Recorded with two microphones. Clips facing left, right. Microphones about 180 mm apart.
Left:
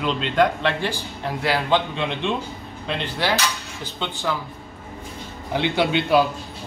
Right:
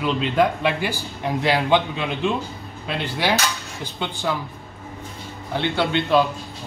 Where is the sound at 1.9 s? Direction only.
5° right (ahead or behind).